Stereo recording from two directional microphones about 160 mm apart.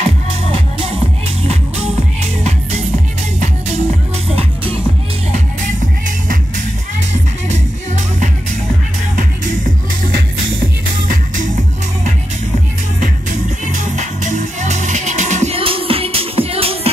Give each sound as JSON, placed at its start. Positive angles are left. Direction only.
{"t": 0.7, "sound": "music", "side_deg": -35}
{"t": 3.3, "sound": "music", "side_deg": -45}
{"t": 11.1, "sound": "music", "side_deg": -55}
{"t": 13.7, "sound": "music", "side_deg": -50}